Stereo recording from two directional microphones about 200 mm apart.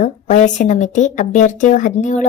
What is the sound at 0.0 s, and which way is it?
A woman's voice, 40° left (ahead or behind).